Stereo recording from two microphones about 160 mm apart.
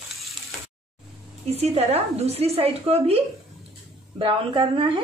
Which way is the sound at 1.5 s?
40° right (ahead or behind).